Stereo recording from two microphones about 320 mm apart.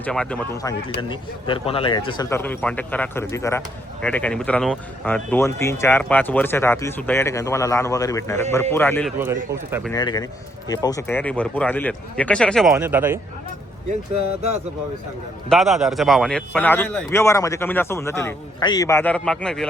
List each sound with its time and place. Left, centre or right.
0.0 s a man's voice: centre
9.1 s speech: centre
9.9 s a man's voice: centre
14.2 s speech: right
15.4 s a man's voice: centre